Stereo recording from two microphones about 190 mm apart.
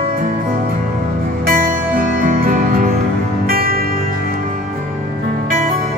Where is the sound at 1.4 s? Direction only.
50° right (ahead or behind).